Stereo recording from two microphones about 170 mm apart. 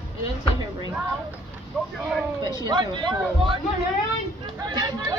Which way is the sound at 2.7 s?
25° right (ahead or behind).